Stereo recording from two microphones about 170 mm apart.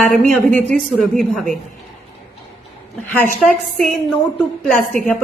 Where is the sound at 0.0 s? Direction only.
5° left (ahead or behind).